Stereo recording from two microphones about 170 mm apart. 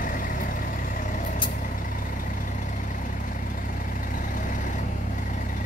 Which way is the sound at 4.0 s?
50° left (ahead or behind).